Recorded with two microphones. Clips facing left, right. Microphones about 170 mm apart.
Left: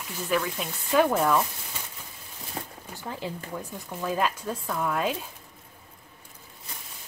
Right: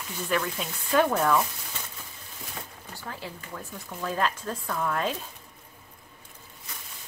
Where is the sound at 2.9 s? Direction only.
15° left (ahead or behind).